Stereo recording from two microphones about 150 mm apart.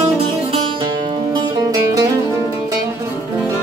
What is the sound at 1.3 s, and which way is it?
Music, 20° right (ahead or behind).